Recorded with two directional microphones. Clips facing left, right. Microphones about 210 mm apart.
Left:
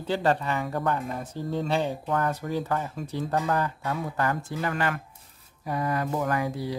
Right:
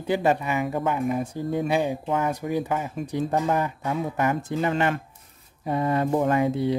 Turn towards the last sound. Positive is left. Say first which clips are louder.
# right 6 dB
turn(degrees=-25)  # may be behind; listen again after turning